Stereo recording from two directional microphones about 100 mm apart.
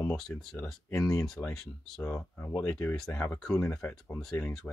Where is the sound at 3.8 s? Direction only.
15° left (ahead or behind).